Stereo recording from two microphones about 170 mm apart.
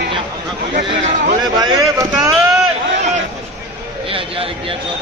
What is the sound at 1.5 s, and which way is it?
Speech, 25° right (ahead or behind).